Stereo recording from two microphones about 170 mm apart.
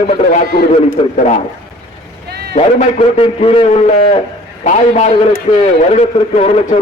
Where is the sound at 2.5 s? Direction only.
40° left (ahead or behind).